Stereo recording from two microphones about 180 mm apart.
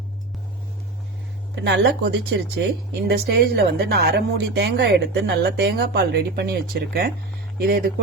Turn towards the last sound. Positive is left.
turn(degrees=-60)  # may be behind; listen again after turning